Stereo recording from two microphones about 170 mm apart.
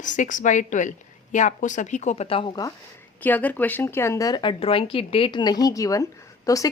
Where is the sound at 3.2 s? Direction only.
10° left (ahead or behind).